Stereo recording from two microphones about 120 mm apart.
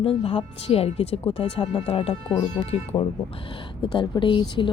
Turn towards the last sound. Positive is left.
turn(degrees=40)  # may be behind; listen again after turning